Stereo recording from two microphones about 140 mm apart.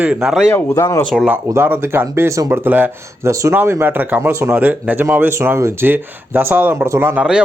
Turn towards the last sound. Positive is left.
turn(degrees=-10)  # may be behind; listen again after turning